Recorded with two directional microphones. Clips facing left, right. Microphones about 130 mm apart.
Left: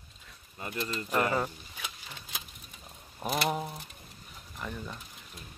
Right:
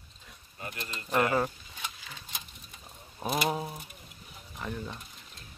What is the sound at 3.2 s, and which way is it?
Speech, centre (ahead or behind).